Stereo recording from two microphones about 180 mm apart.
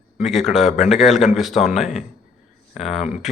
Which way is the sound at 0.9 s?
Centre (ahead or behind).